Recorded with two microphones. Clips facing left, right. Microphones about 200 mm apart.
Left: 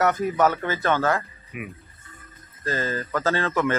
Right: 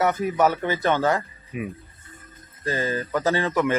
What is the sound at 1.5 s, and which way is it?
Speech, 30° right (ahead or behind).